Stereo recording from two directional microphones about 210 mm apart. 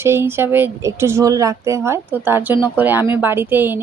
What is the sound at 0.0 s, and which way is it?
Speech, 10° right (ahead or behind).